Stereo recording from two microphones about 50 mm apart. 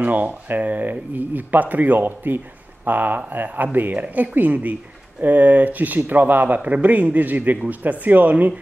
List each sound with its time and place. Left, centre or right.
0.0 s speech: right